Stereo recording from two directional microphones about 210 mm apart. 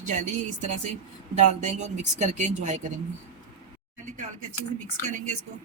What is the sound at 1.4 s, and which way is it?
Speech, 35° right (ahead or behind).